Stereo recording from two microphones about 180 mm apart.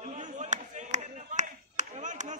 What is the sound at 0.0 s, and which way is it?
Clapping, 40° right (ahead or behind).